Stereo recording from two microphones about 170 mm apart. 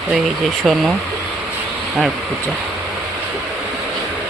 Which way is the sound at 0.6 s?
Centre (ahead or behind).